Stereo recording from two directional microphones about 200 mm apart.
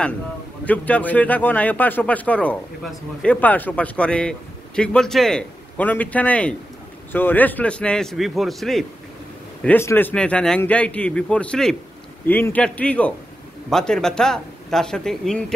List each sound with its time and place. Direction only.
0.7 s a man's voice: 5° left (ahead or behind)